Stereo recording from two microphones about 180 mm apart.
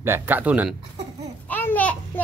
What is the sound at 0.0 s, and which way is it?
Speech, 10° right (ahead or behind).